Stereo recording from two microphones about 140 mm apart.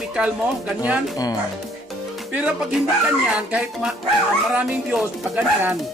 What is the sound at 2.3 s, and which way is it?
Speech, 10° right (ahead or behind).